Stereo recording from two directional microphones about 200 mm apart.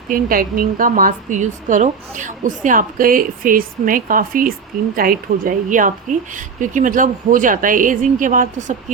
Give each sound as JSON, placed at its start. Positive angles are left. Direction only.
{"t": 0.1, "sound": "a woman's voice", "side_deg": -45}